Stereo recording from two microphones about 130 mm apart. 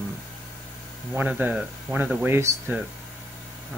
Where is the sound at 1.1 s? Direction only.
15° right (ahead or behind).